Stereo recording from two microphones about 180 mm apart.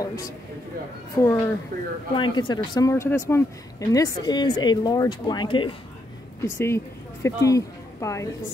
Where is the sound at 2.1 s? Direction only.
25° left (ahead or behind).